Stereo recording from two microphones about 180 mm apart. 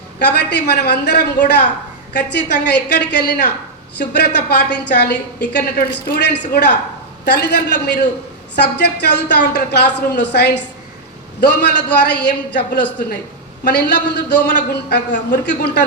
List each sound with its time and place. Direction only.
0.3 s a woman's voice: 70° left (ahead or behind)